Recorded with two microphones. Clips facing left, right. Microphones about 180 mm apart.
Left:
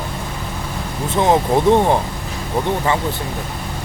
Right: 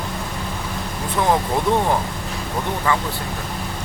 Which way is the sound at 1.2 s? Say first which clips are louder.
Left 5 dB; 25° left (ahead or behind).